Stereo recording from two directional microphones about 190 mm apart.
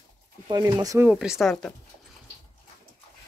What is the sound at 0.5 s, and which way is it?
Speech, 15° right (ahead or behind).